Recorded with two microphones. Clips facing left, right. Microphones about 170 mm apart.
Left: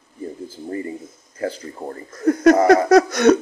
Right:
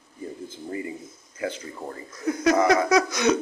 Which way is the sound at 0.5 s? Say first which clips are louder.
Left 4 dB; 40° left (ahead or behind).